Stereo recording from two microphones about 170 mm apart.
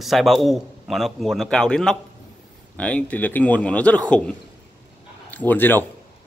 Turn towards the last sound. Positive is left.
turn(degrees=10)  # may be behind; listen again after turning